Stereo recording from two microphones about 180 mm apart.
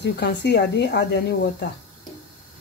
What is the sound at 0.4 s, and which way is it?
Speech, 70° left (ahead or behind).